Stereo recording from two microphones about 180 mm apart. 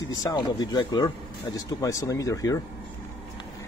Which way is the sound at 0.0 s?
20° left (ahead or behind).